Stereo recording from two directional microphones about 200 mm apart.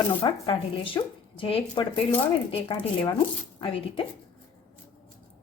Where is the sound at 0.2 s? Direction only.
25° left (ahead or behind).